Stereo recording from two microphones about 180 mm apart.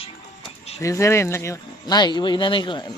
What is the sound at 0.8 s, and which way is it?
Speech, 15° left (ahead or behind).